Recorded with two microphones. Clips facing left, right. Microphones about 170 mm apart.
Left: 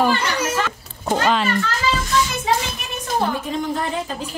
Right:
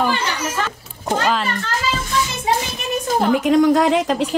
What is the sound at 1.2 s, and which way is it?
Speech, centre (ahead or behind).